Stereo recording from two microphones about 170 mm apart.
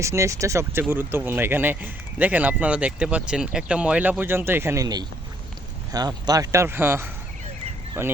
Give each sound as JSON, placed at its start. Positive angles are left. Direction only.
{"t": 0.0, "sound": "speech", "side_deg": -15}